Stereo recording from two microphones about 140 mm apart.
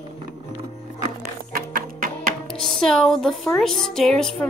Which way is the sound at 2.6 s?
Centre (ahead or behind).